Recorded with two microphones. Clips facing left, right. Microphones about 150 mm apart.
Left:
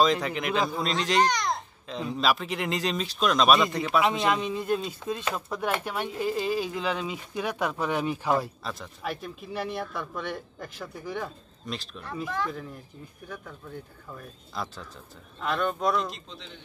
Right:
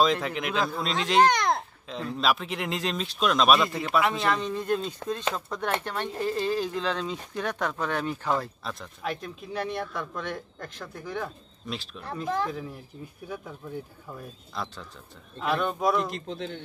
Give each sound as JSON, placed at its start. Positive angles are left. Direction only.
{"t": 0.0, "sound": "speech", "side_deg": 0}
{"t": 1.2, "sound": "babbling", "side_deg": -55}
{"t": 1.9, "sound": "speech", "side_deg": 0}
{"t": 4.0, "sound": "a man's voice", "side_deg": 20}
{"t": 4.4, "sound": "speech", "side_deg": 10}
{"t": 8.6, "sound": "speech", "side_deg": 0}
{"t": 14.5, "sound": "speech", "side_deg": 0}
{"t": 16.1, "sound": "speech", "side_deg": -55}